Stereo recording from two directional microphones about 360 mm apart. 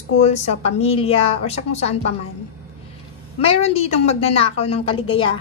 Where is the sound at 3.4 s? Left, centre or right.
Centre.